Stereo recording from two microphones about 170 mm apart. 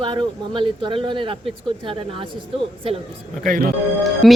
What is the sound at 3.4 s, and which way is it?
Speech, 55° right (ahead or behind).